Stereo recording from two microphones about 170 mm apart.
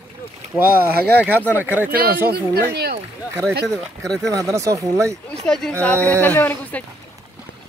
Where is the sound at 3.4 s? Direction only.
10° left (ahead or behind).